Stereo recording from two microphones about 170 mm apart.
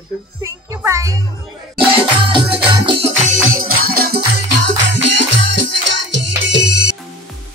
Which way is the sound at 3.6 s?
65° right (ahead or behind).